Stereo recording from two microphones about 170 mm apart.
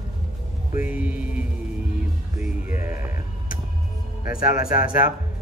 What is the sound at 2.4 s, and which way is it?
Music, 10° right (ahead or behind).